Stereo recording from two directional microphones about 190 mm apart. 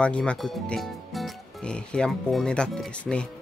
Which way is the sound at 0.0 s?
5° left (ahead or behind).